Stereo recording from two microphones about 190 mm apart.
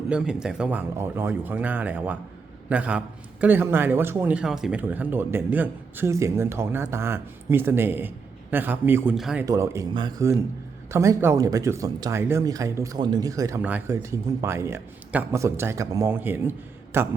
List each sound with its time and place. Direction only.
0.1 s speech: 5° right (ahead or behind)
9.5 s speech: 15° right (ahead or behind)